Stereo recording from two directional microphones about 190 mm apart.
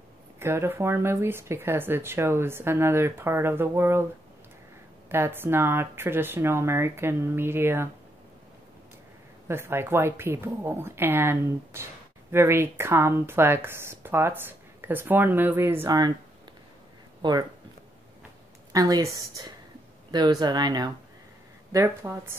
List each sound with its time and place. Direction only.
0.4 s speech: 15° right (ahead or behind)
5.1 s speech: 10° right (ahead or behind)
9.5 s speech: 10° right (ahead or behind)
17.2 s speech: 20° right (ahead or behind)
18.7 s speech: 20° right (ahead or behind)